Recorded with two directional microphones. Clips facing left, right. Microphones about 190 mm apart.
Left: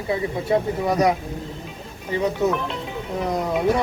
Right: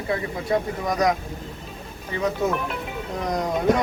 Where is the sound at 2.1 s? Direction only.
25° left (ahead or behind).